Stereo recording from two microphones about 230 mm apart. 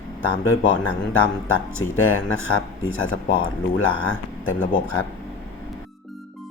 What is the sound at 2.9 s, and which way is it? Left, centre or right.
Speech, left.